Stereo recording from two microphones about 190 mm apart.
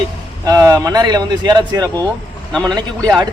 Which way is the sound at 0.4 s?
20° right (ahead or behind).